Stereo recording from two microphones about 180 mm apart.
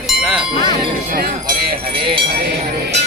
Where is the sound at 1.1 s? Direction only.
60° right (ahead or behind).